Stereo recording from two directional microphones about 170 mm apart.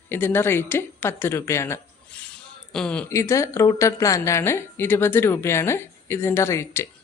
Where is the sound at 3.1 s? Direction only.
20° left (ahead or behind).